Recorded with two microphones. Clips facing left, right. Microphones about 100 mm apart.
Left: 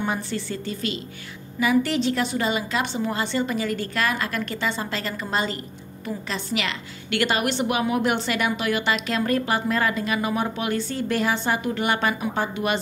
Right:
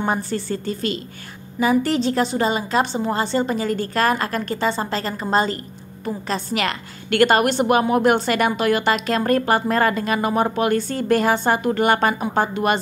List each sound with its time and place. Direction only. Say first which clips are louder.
0.0 s a woman's voice: right 4 dB; 40° right (ahead or behind)